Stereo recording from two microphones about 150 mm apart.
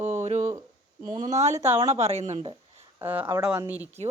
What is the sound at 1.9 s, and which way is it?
Speech, 45° right (ahead or behind).